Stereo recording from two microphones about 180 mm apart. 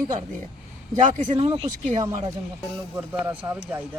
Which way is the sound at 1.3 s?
25° right (ahead or behind).